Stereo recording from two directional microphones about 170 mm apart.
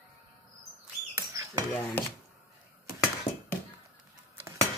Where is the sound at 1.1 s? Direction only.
15° right (ahead or behind).